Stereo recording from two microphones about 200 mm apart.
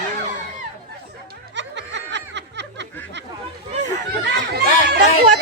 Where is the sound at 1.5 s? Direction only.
60° right (ahead or behind).